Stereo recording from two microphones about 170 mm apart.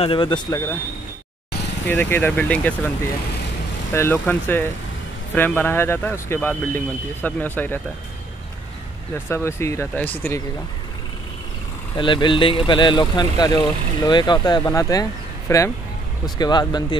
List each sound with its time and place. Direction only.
0.0 s speech: 30° left (ahead or behind)
1.9 s speech: 10° left (ahead or behind)
3.9 s speech: 15° left (ahead or behind)
9.3 s speech: 15° left (ahead or behind)
12.0 s speech: 30° left (ahead or behind)